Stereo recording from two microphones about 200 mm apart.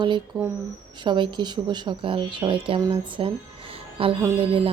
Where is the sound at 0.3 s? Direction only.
20° right (ahead or behind).